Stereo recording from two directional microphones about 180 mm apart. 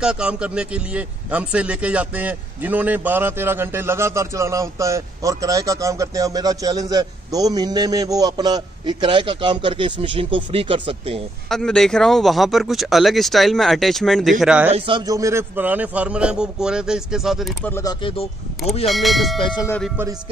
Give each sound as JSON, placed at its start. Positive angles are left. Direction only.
{"t": 0.0, "sound": "a man's voice", "side_deg": -5}
{"t": 11.4, "sound": "a man's voice", "side_deg": 5}
{"t": 14.7, "sound": "a man's voice", "side_deg": -25}
{"t": 17.6, "sound": "speech", "side_deg": 15}
{"t": 18.0, "sound": "speech", "side_deg": 35}
{"t": 18.9, "sound": "a man's voice", "side_deg": 0}